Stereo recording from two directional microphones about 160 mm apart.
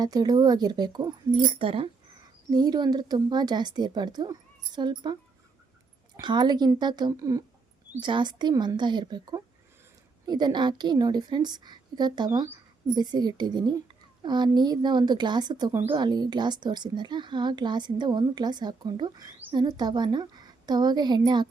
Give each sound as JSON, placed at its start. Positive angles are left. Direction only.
{"t": 0.0, "sound": "a woman's voice", "side_deg": -25}
{"t": 6.1, "sound": "a woman's voice", "side_deg": -30}